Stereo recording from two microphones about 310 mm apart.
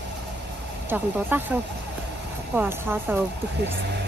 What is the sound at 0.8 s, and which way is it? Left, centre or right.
Speech, centre.